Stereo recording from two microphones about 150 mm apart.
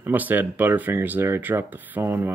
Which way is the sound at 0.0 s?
10° right (ahead or behind).